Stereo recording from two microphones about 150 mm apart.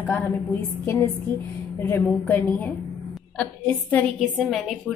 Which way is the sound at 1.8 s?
10° left (ahead or behind).